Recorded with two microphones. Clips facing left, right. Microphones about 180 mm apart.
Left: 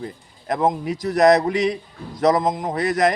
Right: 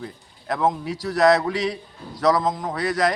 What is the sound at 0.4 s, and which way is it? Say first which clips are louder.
A man's voice: left 2 dB; 20° left (ahead or behind).